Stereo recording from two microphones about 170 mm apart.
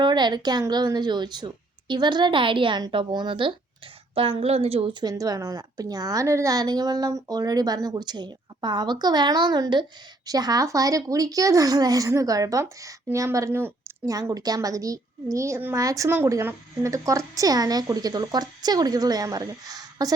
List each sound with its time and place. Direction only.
0.0 s a woman's voice: 25° right (ahead or behind)